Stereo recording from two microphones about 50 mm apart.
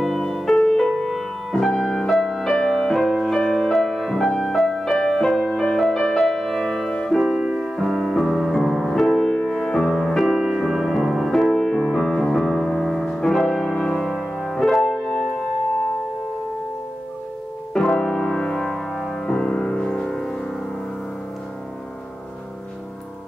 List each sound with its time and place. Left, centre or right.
0.0 s music: centre
7.2 s music: centre
7.7 s music: centre
10.2 s music: centre
11.5 s music: centre
17.7 s keyboard: centre